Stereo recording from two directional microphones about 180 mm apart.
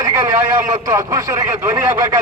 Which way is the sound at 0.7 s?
20° right (ahead or behind).